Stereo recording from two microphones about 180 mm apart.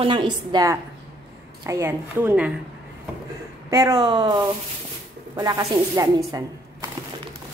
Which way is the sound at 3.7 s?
20° right (ahead or behind).